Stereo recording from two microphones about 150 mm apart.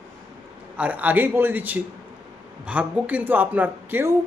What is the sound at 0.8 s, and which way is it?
Speech, 10° right (ahead or behind).